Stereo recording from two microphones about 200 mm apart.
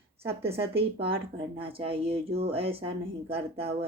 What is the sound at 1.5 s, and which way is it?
Speech, 25° right (ahead or behind).